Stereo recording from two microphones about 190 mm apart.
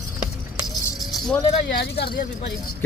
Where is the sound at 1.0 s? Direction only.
Centre (ahead or behind).